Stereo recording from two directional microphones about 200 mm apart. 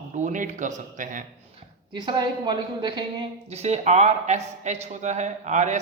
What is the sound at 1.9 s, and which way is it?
A woman's voice, 20° right (ahead or behind).